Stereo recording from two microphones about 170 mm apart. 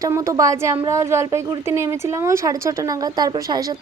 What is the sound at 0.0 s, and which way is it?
Speech, 20° right (ahead or behind).